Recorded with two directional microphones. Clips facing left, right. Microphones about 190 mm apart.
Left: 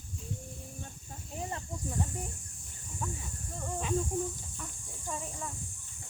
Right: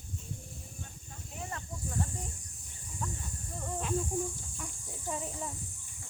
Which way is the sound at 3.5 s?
5° right (ahead or behind).